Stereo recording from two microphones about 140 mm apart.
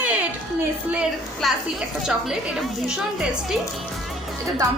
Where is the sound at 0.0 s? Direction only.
10° right (ahead or behind).